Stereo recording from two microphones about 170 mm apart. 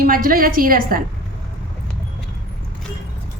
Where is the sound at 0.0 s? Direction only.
55° right (ahead or behind).